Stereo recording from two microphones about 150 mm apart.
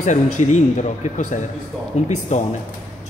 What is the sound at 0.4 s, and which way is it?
A man's voice, 50° left (ahead or behind).